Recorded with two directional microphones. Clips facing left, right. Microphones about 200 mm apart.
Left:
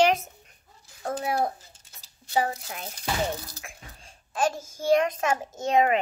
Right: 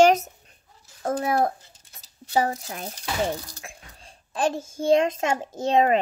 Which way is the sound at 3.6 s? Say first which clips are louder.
Right 1 dB; 35° right (ahead or behind).